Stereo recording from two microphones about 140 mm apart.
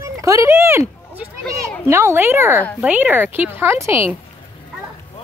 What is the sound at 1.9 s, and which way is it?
Speech, 20° right (ahead or behind).